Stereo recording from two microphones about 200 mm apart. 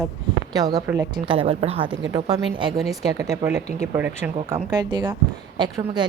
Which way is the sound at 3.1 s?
15° right (ahead or behind).